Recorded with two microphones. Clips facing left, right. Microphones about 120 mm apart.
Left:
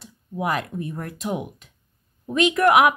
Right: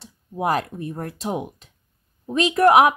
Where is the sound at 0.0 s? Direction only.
35° right (ahead or behind).